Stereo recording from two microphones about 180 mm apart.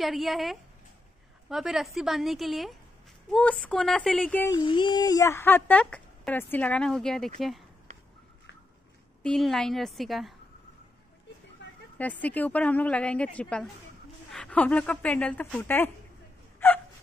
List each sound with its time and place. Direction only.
0.0 s speech: centre (ahead or behind)
4.5 s speech: 25° left (ahead or behind); by 7.6 s centre (ahead or behind)
9.2 s speech: 5° left (ahead or behind)
11.6 s a sound: 80° left
12.0 s speech: 10° left (ahead or behind)
16.5 s gasp: 10° left (ahead or behind)